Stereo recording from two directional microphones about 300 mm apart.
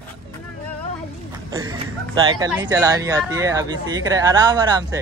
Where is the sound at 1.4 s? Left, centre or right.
Centre.